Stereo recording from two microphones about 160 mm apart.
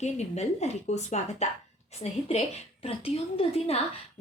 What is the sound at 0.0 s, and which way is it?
A woman's voice, 45° left (ahead or behind).